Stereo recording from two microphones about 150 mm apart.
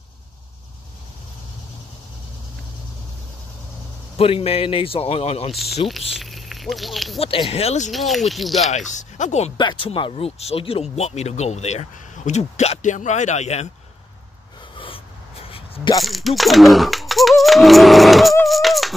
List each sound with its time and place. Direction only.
4.2 s speech: 40° left (ahead or behind)
5.5 s speech: centre (ahead or behind)
7.2 s speech: 40° left (ahead or behind)
7.9 s speech: centre (ahead or behind)
8.6 s speech: 50° left (ahead or behind)
9.6 s speech: 35° left (ahead or behind)
14.8 s a sound: 35° left (ahead or behind)
16.0 s a sound: centre (ahead or behind)